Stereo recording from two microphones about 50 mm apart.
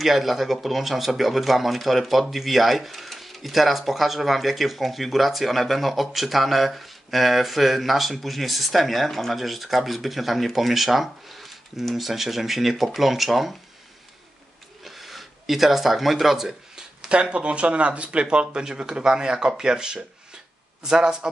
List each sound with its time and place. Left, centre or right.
0.0 s speech: centre
14.9 s a sound: centre
17.1 s speech: right